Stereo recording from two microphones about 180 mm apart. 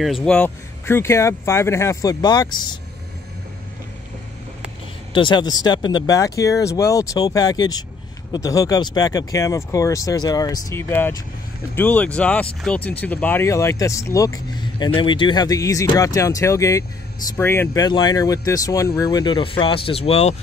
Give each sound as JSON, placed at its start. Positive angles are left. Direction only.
{"t": 0.0, "sound": "speech", "side_deg": 0}
{"t": 5.1, "sound": "speech", "side_deg": 25}
{"t": 17.8, "sound": "speech", "side_deg": 25}